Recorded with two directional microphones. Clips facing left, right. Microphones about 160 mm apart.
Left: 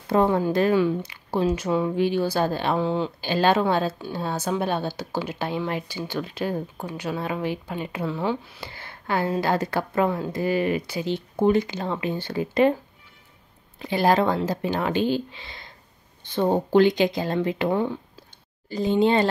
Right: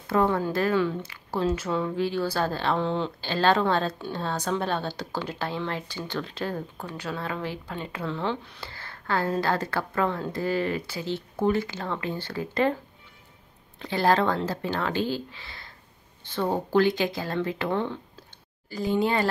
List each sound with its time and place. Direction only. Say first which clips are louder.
0.1 s speech: left 3 dB; 20° left (ahead or behind)
13.7 s speech: left 2 dB; 15° left (ahead or behind)
18.7 s speech: left 5 dB; 20° left (ahead or behind)